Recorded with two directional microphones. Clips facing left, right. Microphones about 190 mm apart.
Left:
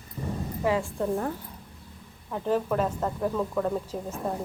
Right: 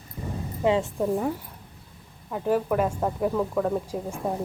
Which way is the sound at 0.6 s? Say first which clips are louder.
Right 4 dB; 25° right (ahead or behind).